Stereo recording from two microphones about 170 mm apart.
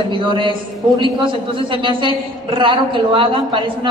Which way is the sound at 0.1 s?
30° right (ahead or behind).